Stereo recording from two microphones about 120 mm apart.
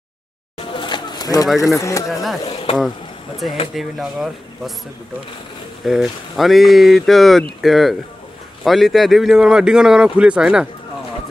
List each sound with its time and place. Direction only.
0.7 s a sound: 40° left (ahead or behind)
1.6 s speech: 25° left (ahead or behind)
2.4 s speech: 50° left (ahead or behind)
3.7 s speech: centre (ahead or behind)
5.9 s speech: centre (ahead or behind)